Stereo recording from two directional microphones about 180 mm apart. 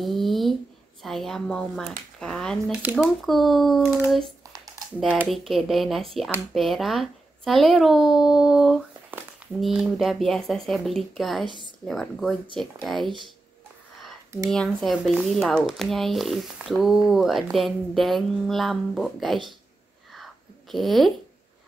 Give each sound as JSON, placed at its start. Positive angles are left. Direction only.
{"t": 0.0, "sound": "a sound", "side_deg": 0}
{"t": 1.0, "sound": "speech", "side_deg": 0}
{"t": 5.0, "sound": "speech", "side_deg": -10}
{"t": 14.5, "sound": "speech", "side_deg": 5}
{"t": 20.7, "sound": "speech", "side_deg": 0}